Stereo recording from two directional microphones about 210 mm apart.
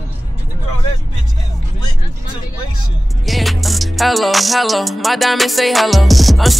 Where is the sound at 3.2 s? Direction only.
Centre (ahead or behind).